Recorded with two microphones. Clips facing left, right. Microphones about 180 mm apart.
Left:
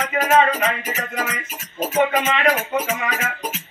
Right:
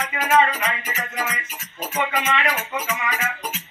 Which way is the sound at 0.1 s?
40° left (ahead or behind).